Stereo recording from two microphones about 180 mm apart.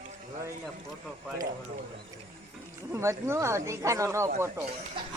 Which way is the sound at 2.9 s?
15° right (ahead or behind).